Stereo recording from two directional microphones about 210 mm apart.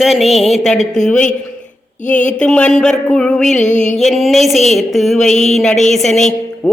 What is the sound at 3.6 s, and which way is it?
Music, 35° left (ahead or behind).